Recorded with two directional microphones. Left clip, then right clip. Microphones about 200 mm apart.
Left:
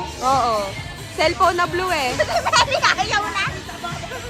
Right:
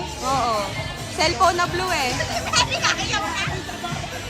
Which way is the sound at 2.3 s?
25° left (ahead or behind).